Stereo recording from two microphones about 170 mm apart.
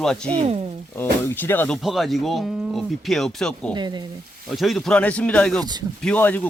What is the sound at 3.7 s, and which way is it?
Speech, 25° right (ahead or behind).